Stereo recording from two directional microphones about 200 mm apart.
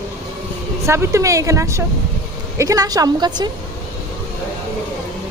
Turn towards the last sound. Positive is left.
turn(degrees=-20)  # may be behind; listen again after turning